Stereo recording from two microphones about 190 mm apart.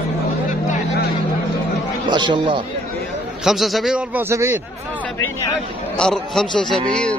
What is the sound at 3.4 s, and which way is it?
A man's voice, centre (ahead or behind).